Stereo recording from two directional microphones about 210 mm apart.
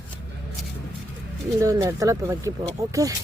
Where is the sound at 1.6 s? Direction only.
15° right (ahead or behind).